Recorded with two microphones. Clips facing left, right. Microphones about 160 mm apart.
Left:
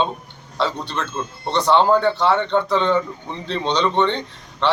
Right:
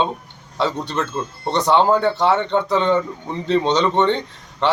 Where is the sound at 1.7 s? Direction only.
5° right (ahead or behind).